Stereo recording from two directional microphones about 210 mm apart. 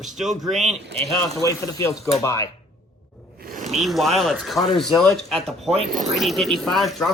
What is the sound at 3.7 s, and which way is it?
Speech, centre (ahead or behind).